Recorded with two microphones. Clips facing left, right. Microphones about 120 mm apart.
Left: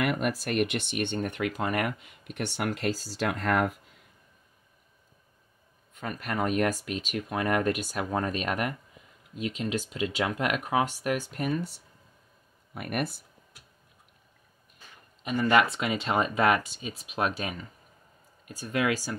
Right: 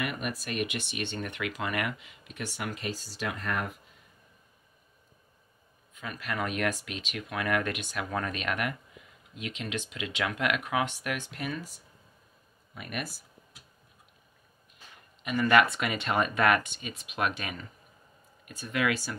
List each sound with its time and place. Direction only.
0.0 s speech: 80° left
5.9 s speech: 50° left (ahead or behind)
12.7 s speech: 55° left (ahead or behind)
15.2 s speech: 25° left (ahead or behind)